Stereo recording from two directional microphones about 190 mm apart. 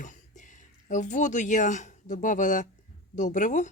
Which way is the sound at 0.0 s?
40° left (ahead or behind).